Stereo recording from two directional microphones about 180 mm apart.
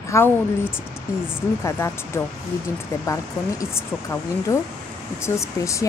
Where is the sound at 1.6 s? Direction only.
15° left (ahead or behind).